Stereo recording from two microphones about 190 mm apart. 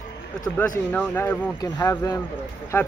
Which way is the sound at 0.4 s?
10° left (ahead or behind).